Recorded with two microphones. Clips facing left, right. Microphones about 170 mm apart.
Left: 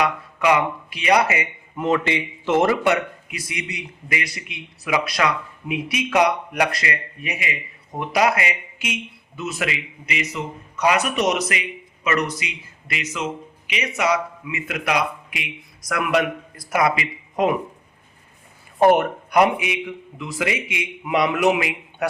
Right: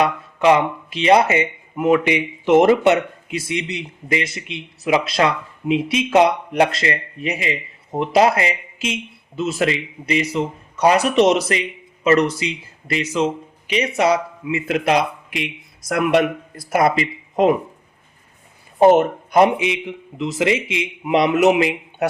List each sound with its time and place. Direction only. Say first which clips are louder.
0.0 s speech: right 4 dB; 25° right (ahead or behind)
1.7 s speech: right 5 dB; 10° right (ahead or behind); by 17.6 s 25° right (ahead or behind)
18.8 s speech: right 3 dB; 25° right (ahead or behind)